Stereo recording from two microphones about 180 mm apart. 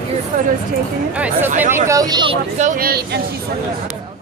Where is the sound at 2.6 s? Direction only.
50° right (ahead or behind).